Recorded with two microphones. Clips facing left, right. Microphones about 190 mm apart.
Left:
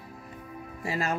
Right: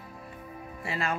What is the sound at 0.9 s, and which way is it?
Speech, 40° left (ahead or behind).